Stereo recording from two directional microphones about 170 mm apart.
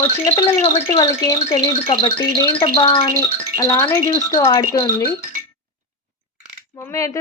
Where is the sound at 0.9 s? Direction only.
20° left (ahead or behind).